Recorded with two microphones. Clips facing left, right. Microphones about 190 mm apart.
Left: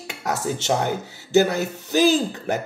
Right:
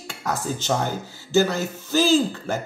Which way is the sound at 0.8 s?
65° left (ahead or behind).